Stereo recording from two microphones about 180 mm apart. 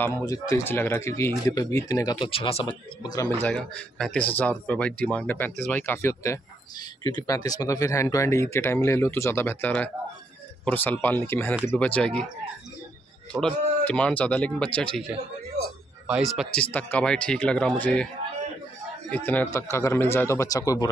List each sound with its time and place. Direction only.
0.0 s speech: 15° left (ahead or behind)
3.4 s speech: 5° left (ahead or behind)
13.3 s speech: 5° left (ahead or behind)
19.0 s speech: 10° left (ahead or behind)